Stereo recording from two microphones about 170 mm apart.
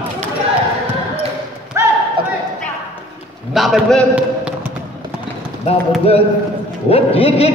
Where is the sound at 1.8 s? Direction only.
15° right (ahead or behind).